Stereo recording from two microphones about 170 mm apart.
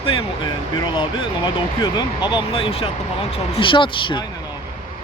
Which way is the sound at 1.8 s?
25° left (ahead or behind).